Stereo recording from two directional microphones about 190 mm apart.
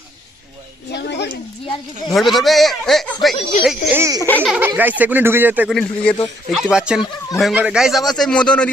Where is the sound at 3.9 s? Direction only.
15° right (ahead or behind).